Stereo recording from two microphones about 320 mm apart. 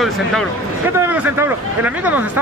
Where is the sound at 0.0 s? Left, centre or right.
Centre.